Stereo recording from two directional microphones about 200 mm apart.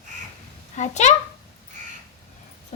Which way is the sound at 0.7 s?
35° left (ahead or behind).